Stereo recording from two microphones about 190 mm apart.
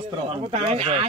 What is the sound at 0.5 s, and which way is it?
Speech, 35° right (ahead or behind).